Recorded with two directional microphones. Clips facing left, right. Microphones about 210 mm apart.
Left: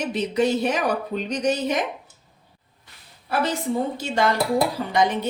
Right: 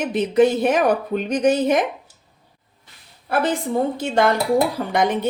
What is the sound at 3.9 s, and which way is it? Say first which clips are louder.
Speech: right 4 dB; 55° right (ahead or behind).